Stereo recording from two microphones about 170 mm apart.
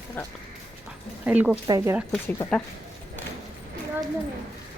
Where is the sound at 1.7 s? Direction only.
20° right (ahead or behind).